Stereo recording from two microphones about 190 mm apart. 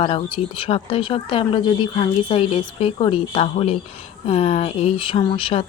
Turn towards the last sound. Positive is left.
turn(degrees=25)  # may be behind; listen again after turning